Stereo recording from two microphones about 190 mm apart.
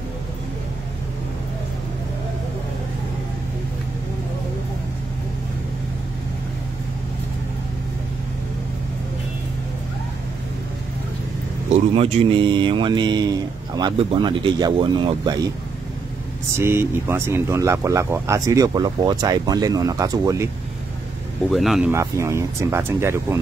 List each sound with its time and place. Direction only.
11.9 s speech: 30° right (ahead or behind)
16.5 s speech: 15° right (ahead or behind)
21.5 s speech: centre (ahead or behind)
21.9 s speech: 15° right (ahead or behind)